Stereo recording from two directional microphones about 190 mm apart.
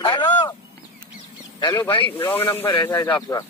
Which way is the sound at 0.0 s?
20° left (ahead or behind).